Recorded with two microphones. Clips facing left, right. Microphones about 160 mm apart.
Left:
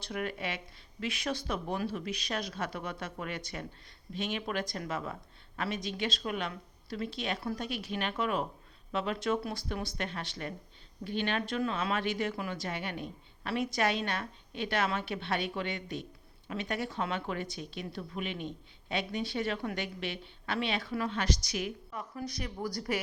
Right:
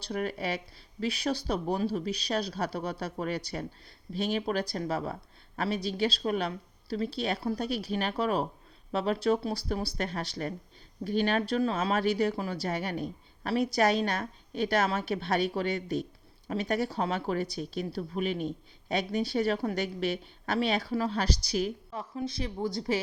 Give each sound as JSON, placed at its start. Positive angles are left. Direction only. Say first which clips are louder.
{"t": 0.0, "sound": "speech", "louder": "right 4 dB", "side_deg": -35}